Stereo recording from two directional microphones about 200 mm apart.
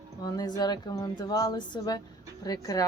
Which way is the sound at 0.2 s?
20° left (ahead or behind).